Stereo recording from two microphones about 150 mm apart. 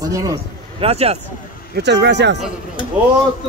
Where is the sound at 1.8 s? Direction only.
90° right.